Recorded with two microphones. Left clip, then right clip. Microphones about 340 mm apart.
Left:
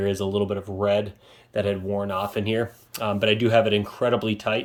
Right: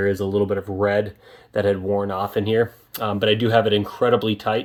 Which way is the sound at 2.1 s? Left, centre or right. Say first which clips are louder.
Right 4 dB; centre.